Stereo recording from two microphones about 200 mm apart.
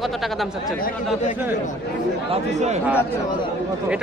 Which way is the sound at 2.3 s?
35° right (ahead or behind).